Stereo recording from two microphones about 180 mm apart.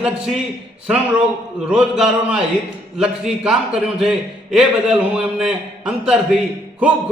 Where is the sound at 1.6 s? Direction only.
5° right (ahead or behind).